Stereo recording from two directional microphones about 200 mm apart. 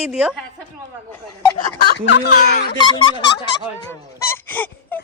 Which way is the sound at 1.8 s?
55° left (ahead or behind).